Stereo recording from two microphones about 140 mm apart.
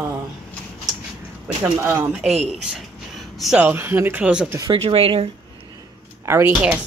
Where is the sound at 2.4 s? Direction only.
5° right (ahead or behind).